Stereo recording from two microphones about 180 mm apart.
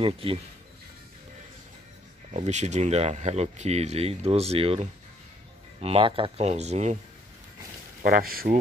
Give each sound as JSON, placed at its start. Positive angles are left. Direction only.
{"t": 0.0, "sound": "speech", "side_deg": -30}
{"t": 2.3, "sound": "speech", "side_deg": -40}
{"t": 8.0, "sound": "speech", "side_deg": -55}